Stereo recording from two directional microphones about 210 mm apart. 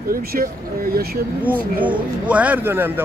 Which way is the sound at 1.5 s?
10° right (ahead or behind).